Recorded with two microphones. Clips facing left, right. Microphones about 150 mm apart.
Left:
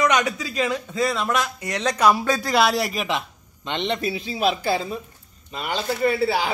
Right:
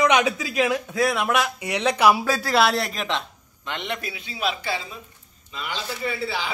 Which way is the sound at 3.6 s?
25° left (ahead or behind).